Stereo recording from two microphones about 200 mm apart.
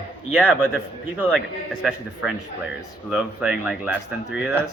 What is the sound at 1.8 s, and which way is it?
Speech, 5° right (ahead or behind).